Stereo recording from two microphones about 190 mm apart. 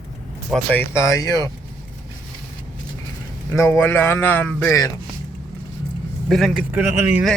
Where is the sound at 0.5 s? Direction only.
10° left (ahead or behind).